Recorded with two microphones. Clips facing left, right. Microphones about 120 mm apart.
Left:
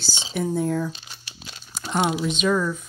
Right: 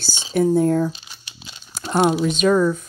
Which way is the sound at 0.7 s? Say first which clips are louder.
Right 6 dB; 25° right (ahead or behind).